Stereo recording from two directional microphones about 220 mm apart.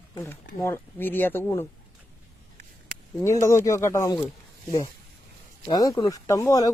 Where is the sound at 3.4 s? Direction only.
15° left (ahead or behind).